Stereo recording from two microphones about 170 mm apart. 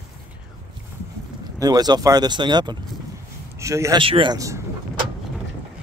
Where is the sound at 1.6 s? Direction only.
25° right (ahead or behind).